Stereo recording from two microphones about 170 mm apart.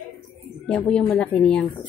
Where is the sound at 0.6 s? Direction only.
5° left (ahead or behind).